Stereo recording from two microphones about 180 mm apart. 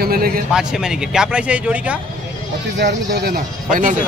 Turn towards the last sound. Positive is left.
turn(degrees=-50)  # may be behind; listen again after turning